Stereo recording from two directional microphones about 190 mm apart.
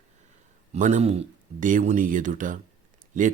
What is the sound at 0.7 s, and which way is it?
Speech, 40° right (ahead or behind).